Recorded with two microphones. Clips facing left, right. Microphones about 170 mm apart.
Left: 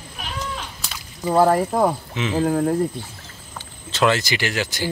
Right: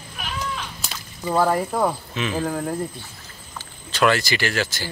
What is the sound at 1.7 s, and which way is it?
Speech, 20° left (ahead or behind).